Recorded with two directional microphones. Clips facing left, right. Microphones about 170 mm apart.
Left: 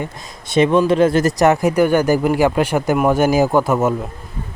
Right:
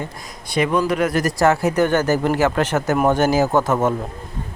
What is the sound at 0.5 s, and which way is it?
Speech, 25° left (ahead or behind).